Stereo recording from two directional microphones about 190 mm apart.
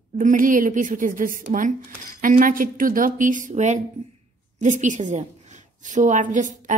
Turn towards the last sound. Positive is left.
turn(degrees=-40)  # may be behind; listen again after turning